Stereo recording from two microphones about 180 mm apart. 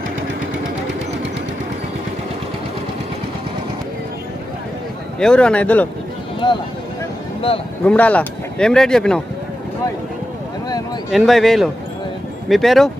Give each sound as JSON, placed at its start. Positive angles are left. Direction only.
{"t": 5.2, "sound": "speech", "side_deg": 5}
{"t": 6.4, "sound": "a sound", "side_deg": 25}
{"t": 7.8, "sound": "speech", "side_deg": 10}
{"t": 11.1, "sound": "speech", "side_deg": 0}